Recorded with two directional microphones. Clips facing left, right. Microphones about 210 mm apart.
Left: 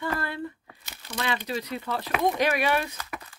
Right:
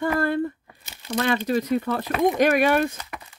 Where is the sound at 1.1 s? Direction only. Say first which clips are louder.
Right 8 dB; 45° right (ahead or behind).